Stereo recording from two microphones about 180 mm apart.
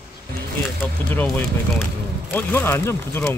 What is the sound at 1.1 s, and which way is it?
Speech, 10° left (ahead or behind).